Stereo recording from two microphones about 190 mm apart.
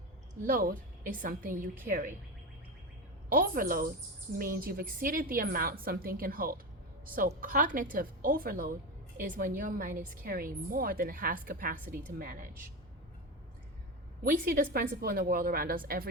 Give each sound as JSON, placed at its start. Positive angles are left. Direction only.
{"t": 0.4, "sound": "a woman's voice", "side_deg": -45}
{"t": 3.2, "sound": "a woman's voice", "side_deg": -50}
{"t": 14.3, "sound": "a woman's voice", "side_deg": -45}